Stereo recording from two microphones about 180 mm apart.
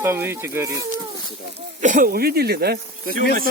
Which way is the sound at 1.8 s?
45° right (ahead or behind).